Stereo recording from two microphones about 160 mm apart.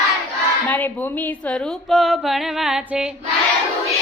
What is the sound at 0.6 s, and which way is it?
A woman's voice, 10° left (ahead or behind).